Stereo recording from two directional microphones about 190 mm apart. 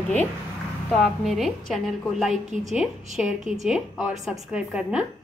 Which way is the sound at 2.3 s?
40° right (ahead or behind).